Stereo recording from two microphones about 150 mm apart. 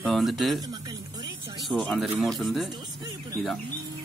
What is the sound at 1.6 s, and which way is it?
Speech, centre (ahead or behind).